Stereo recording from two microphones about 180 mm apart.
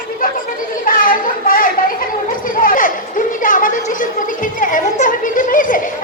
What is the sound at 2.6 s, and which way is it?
Chatter, 50° left (ahead or behind).